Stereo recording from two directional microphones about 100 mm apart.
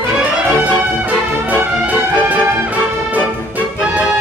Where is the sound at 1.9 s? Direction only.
15° right (ahead or behind).